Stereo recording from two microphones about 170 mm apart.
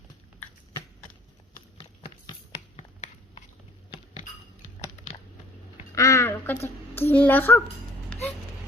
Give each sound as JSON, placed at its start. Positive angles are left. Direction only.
{"t": 1.8, "sound": "clip-clop", "side_deg": 25}
{"t": 2.7, "sound": "finger snapping", "side_deg": 40}
{"t": 5.9, "sound": "a sound", "side_deg": 20}